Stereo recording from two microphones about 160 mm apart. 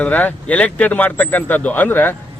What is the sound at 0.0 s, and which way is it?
Speech, 10° left (ahead or behind).